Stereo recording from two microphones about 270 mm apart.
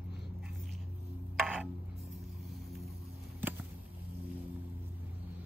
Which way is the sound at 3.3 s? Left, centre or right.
Centre.